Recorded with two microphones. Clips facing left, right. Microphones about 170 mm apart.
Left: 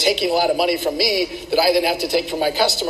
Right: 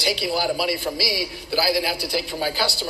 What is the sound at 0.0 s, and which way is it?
A man's voice, 20° left (ahead or behind).